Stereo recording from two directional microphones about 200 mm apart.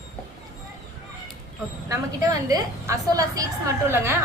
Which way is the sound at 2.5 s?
15° right (ahead or behind).